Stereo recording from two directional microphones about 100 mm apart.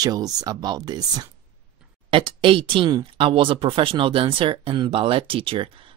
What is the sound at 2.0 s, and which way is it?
Speech, 60° right (ahead or behind).